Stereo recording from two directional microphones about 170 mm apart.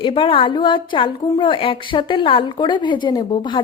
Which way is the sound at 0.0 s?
30° left (ahead or behind).